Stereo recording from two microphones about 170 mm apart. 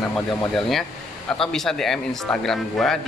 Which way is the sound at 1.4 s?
Centre (ahead or behind).